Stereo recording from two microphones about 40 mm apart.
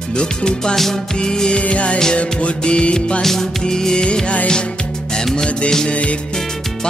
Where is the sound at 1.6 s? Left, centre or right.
Left.